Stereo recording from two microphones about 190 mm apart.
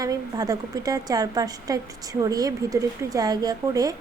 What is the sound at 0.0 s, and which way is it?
A woman's voice, 20° right (ahead or behind).